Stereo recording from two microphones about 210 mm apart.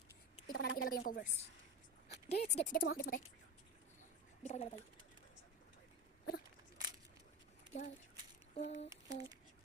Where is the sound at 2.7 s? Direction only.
45° left (ahead or behind).